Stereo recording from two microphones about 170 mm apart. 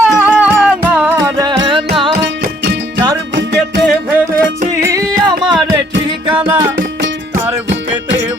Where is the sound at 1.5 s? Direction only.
25° right (ahead or behind).